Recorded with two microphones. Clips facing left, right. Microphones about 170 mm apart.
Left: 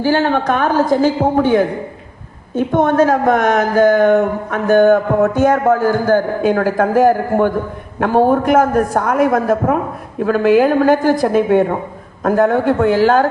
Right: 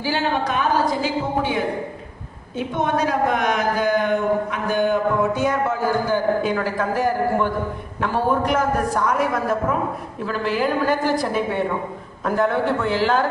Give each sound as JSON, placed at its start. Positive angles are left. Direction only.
{"t": 0.0, "sound": "speech", "side_deg": 55}